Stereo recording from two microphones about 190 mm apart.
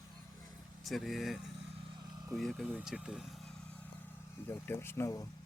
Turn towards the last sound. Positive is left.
turn(degrees=15)  # may be behind; listen again after turning